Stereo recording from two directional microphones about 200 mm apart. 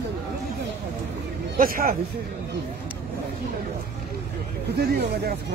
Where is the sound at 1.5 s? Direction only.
45° right (ahead or behind).